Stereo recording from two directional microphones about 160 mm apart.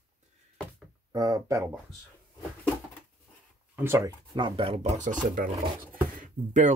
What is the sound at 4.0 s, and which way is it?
Speech, 30° right (ahead or behind).